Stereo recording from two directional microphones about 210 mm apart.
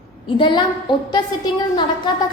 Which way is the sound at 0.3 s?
20° left (ahead or behind).